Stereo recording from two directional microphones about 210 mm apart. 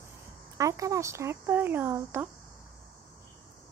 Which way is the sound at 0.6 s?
15° right (ahead or behind).